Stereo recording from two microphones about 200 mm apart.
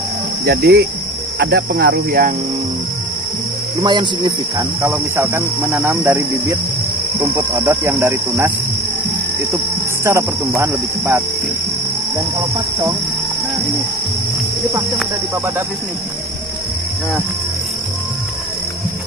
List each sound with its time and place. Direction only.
0.5 s cricket: 55° right (ahead or behind)
3.8 s speech: 25° right (ahead or behind)
4.9 s cricket: 10° right (ahead or behind)
10.0 s cricket: 15° right (ahead or behind)